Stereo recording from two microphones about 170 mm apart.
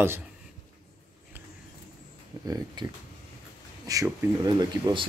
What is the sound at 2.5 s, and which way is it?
Speech, 20° right (ahead or behind).